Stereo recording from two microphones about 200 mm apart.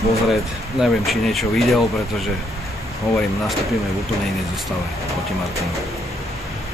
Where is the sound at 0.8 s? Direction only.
Centre (ahead or behind).